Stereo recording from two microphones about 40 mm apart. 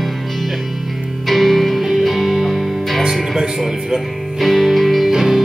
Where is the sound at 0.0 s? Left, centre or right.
Centre.